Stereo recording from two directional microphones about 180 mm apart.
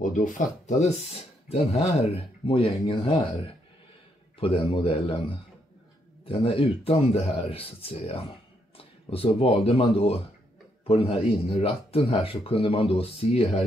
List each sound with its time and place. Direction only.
0.0 s speech: 45° left (ahead or behind)
4.4 s speech: 30° left (ahead or behind)